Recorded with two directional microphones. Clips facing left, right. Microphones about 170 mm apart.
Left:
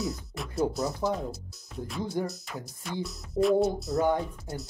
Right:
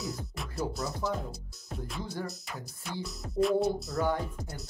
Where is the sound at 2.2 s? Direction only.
Centre (ahead or behind).